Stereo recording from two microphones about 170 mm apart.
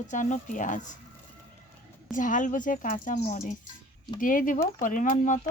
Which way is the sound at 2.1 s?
50° left (ahead or behind).